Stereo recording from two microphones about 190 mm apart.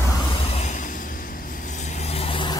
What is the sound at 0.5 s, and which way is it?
Vehicle, 40° left (ahead or behind).